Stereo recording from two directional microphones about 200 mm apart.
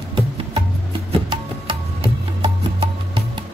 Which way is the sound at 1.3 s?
25° right (ahead or behind).